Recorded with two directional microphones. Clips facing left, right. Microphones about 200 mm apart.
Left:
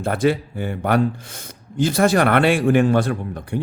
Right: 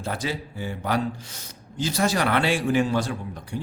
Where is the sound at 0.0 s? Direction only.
55° left (ahead or behind).